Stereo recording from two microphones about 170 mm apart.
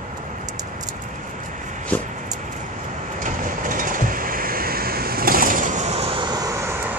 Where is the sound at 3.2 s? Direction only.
50° right (ahead or behind); by 6.7 s 20° right (ahead or behind).